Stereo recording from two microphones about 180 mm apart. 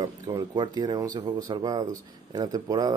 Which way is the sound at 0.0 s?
20° right (ahead or behind).